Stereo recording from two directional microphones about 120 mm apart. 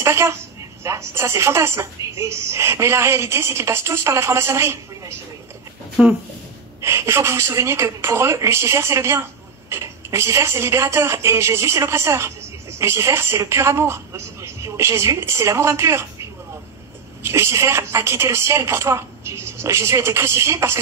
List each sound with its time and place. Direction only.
0.0 s a woman's voice: 20° right (ahead or behind)
6.0 s speech: 10° right (ahead or behind)
6.8 s a woman's voice: 20° right (ahead or behind)